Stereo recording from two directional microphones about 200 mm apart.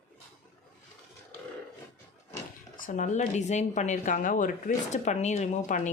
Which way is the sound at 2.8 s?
40° left (ahead or behind).